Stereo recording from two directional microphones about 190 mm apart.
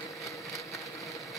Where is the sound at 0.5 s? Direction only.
15° left (ahead or behind).